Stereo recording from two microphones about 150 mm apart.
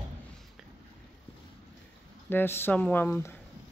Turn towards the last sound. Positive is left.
turn(degrees=15)  # may be behind; listen again after turning